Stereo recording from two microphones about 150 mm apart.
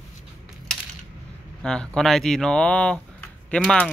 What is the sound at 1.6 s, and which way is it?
Speech, 5° left (ahead or behind).